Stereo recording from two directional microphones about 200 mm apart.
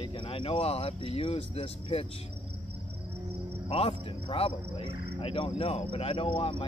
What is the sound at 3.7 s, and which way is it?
Speech, 30° left (ahead or behind).